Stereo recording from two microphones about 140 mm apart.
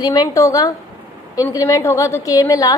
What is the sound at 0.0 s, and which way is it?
A woman's voice, 30° left (ahead or behind).